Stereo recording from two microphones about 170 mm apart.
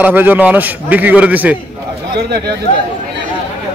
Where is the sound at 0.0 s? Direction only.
10° right (ahead or behind).